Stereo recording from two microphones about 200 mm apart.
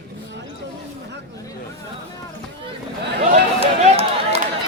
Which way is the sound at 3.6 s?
30° right (ahead or behind).